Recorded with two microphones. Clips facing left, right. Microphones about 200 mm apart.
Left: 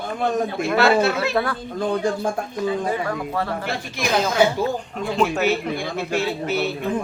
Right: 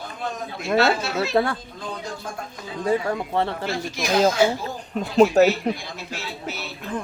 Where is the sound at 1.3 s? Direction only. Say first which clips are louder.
Right 2 dB; 25° right (ahead or behind).